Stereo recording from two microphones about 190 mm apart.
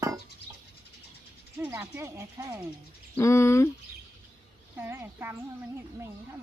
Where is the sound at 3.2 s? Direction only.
15° left (ahead or behind).